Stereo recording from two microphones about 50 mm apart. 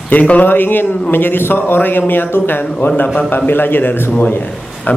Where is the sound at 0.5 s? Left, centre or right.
Left.